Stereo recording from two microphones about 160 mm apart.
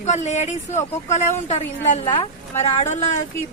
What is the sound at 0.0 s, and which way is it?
Speech, 45° left (ahead or behind).